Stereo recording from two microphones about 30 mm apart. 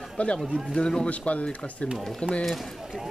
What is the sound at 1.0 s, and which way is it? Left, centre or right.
Speech, left.